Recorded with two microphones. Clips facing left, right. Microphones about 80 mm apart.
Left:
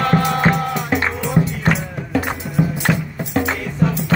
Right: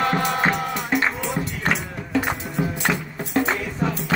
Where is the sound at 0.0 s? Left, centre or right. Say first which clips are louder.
Left 4 dB; centre.